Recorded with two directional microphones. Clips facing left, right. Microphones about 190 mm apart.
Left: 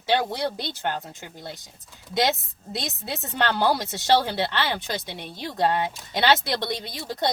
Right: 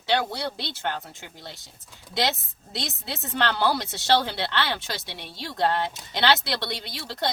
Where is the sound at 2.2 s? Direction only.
15° left (ahead or behind).